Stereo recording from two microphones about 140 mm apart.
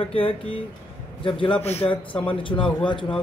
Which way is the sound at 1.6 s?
45° left (ahead or behind).